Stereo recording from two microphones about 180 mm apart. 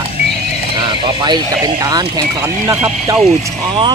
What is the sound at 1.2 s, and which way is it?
Speech, 20° right (ahead or behind).